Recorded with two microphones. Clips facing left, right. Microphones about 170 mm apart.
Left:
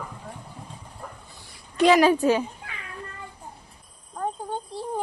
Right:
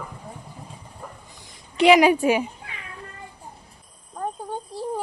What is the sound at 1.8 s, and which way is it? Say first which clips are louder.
Speech: right 2 dB; 15° right (ahead or behind).